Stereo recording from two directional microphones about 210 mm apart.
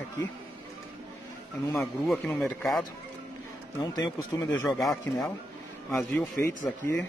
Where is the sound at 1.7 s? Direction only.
Centre (ahead or behind).